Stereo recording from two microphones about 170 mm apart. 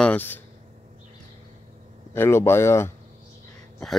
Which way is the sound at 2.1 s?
15° left (ahead or behind).